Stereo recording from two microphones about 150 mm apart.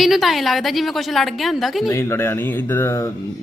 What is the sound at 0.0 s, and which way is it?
A man's voice, centre (ahead or behind).